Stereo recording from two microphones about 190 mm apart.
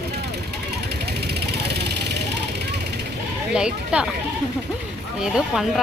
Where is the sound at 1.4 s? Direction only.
60° right (ahead or behind).